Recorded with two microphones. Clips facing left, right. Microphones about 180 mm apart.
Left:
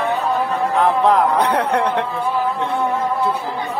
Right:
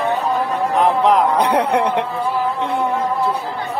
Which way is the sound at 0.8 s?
15° right (ahead or behind).